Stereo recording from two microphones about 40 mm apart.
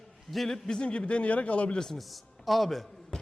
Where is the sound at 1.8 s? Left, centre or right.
Centre.